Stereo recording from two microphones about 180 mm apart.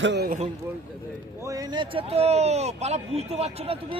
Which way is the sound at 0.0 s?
75° right (ahead or behind).